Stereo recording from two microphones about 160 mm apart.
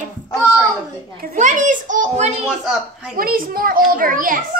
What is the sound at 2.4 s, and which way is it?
Speech, 5° right (ahead or behind).